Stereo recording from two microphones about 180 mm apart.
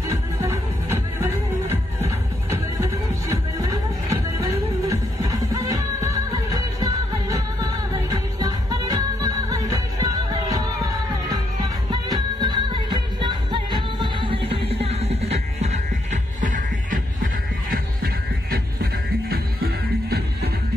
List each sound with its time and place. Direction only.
0.1 s music: 15° right (ahead or behind); by 20.2 s 60° right (ahead or behind)